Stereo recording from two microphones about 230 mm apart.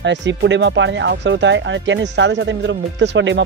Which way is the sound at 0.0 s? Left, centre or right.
Right.